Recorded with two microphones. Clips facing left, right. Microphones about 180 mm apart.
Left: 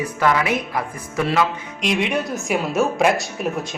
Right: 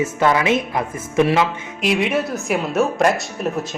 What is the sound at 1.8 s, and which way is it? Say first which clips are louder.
A man's voice: right 2 dB; 5° right (ahead or behind).